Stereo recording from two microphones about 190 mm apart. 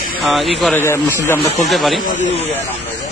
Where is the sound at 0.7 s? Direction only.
15° left (ahead or behind).